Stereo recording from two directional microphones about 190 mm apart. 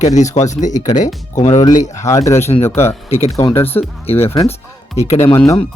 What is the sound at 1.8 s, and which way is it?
Speech, 15° left (ahead or behind).